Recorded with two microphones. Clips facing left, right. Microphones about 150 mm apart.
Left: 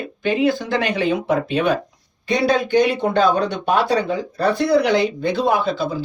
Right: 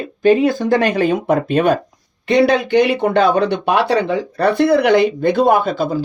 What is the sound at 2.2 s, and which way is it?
Speech, 65° right (ahead or behind).